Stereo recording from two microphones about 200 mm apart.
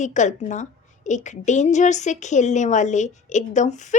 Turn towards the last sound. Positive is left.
turn(degrees=35)  # may be behind; listen again after turning